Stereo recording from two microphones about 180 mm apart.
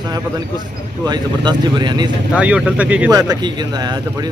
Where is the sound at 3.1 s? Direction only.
20° right (ahead or behind).